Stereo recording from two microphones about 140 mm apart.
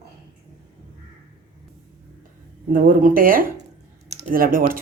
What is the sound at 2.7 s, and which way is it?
Speech, 80° right.